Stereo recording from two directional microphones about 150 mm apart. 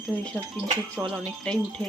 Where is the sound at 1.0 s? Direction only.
5° left (ahead or behind).